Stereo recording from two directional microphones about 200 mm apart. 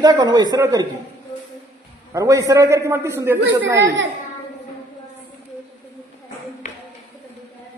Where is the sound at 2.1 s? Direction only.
15° right (ahead or behind).